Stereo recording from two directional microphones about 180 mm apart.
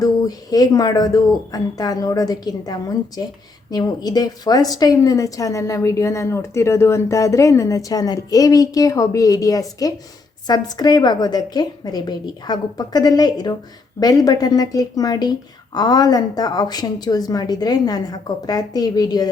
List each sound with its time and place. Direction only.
0.0 s a woman's voice: 20° left (ahead or behind)